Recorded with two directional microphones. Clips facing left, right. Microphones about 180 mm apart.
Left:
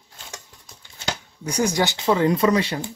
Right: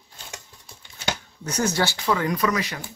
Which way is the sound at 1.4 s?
10° left (ahead or behind).